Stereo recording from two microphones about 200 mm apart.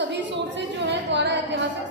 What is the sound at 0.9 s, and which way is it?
Speech, 60° right (ahead or behind).